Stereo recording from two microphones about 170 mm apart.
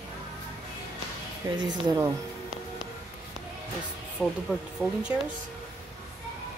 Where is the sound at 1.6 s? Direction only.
25° right (ahead or behind).